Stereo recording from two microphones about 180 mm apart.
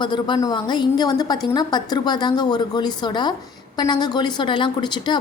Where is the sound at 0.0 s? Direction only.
25° left (ahead or behind).